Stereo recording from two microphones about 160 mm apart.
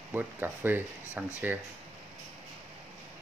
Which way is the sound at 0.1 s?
10° right (ahead or behind).